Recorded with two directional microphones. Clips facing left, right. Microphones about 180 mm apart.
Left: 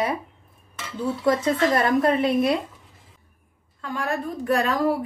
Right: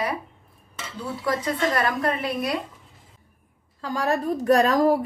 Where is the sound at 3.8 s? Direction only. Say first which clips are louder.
Right 3 dB; 35° right (ahead or behind).